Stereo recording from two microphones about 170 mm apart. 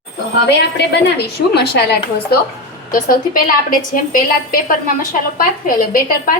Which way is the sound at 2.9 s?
55° left (ahead or behind).